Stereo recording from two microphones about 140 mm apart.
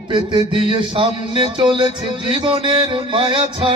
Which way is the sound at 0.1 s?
35° right (ahead or behind).